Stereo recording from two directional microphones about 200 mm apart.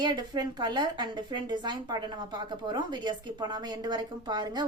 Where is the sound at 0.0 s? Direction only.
20° right (ahead or behind).